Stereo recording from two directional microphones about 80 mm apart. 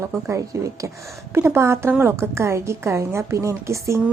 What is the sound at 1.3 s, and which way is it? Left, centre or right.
A woman's voice, right.